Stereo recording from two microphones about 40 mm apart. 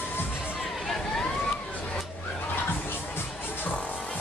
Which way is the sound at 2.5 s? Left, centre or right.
Left.